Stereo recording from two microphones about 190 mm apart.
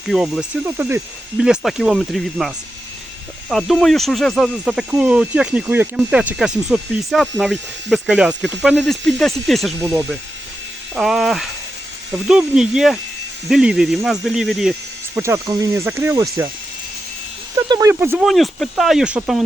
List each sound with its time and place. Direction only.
0.1 s speech: 5° right (ahead or behind)
3.5 s speech: centre (ahead or behind)
9.8 s speech: 15° right (ahead or behind)
10.9 s speech: centre (ahead or behind)
15.2 s speech: 15° right (ahead or behind)
17.7 s speech: 15° right (ahead or behind)
18.3 s speech: centre (ahead or behind)